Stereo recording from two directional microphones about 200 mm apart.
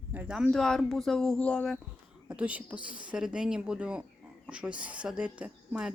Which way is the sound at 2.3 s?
5° right (ahead or behind).